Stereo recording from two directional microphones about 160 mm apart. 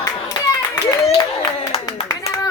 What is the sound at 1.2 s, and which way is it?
Clapping, 25° left (ahead or behind).